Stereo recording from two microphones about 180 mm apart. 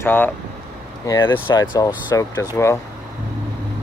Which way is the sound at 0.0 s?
10° left (ahead or behind).